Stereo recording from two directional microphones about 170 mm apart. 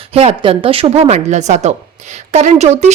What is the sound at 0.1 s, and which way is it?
A woman's voice, 35° right (ahead or behind).